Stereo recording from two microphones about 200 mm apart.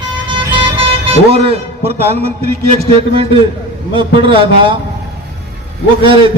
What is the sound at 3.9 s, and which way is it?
Speech, 25° right (ahead or behind).